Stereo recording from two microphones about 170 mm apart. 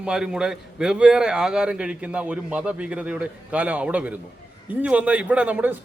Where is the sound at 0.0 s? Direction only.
5° right (ahead or behind).